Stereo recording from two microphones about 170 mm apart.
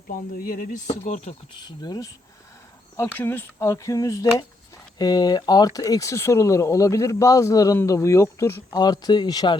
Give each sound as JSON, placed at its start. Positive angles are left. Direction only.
{"t": 0.1, "sound": "speech", "side_deg": 55}
{"t": 1.5, "sound": "speech", "side_deg": 25}
{"t": 3.2, "sound": "speech", "side_deg": 15}